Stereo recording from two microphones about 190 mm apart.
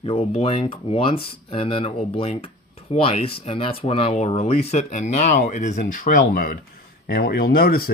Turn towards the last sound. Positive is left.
turn(degrees=50)  # may be behind; listen again after turning